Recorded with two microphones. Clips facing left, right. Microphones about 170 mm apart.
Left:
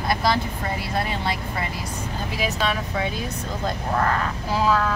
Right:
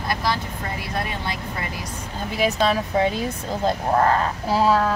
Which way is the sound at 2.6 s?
35° right (ahead or behind).